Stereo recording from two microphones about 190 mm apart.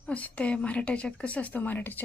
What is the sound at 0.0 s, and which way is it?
Speech, 5° left (ahead or behind).